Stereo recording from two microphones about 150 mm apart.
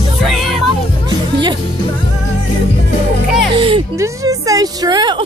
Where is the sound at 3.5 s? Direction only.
35° right (ahead or behind).